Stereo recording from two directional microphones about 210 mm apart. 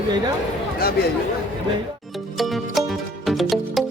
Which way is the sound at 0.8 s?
45° left (ahead or behind).